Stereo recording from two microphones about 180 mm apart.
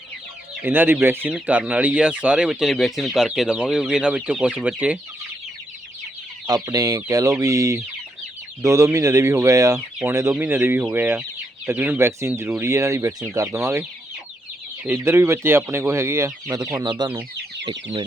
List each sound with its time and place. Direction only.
0.6 s speech: 10° right (ahead or behind)
6.5 s chicken: 20° right (ahead or behind)
8.6 s speech: 15° right (ahead or behind)
14.9 s speech: 15° right (ahead or behind)